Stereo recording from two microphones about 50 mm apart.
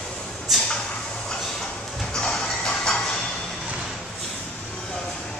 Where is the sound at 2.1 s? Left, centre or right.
Centre.